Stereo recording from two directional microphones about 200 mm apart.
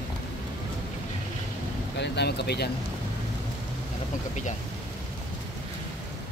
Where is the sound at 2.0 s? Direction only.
55° left (ahead or behind).